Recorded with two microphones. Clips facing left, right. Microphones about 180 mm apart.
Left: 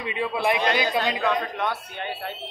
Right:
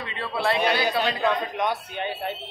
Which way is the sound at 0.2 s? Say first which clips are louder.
Left 1 dB; 15° left (ahead or behind).